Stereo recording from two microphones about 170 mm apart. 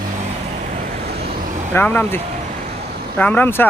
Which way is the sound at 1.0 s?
70° right (ahead or behind).